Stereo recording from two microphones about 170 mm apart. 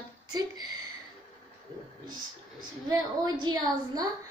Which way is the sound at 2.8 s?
20° right (ahead or behind).